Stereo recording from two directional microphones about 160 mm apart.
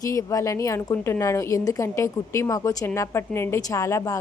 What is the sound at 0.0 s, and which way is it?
A woman's voice, 20° left (ahead or behind).